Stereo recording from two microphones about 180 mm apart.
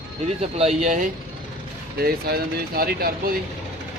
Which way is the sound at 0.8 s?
45° right (ahead or behind).